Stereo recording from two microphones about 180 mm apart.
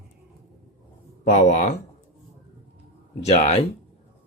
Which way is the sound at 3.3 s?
35° left (ahead or behind).